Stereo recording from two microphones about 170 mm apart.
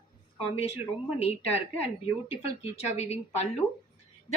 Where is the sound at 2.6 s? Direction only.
35° left (ahead or behind).